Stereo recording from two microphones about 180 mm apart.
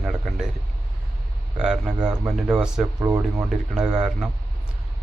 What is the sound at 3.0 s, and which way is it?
Speech, 20° right (ahead or behind).